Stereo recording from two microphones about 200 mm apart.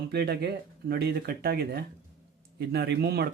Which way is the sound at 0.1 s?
55° right (ahead or behind).